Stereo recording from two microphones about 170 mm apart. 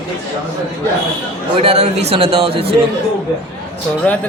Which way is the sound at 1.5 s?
35° right (ahead or behind).